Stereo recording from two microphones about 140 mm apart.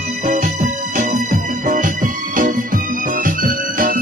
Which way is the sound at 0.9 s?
65° right (ahead or behind).